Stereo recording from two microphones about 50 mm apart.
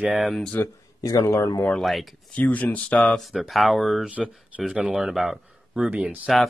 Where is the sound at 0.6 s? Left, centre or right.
Left.